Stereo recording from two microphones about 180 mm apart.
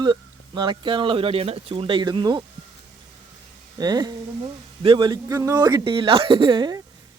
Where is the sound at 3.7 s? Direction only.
20° right (ahead or behind).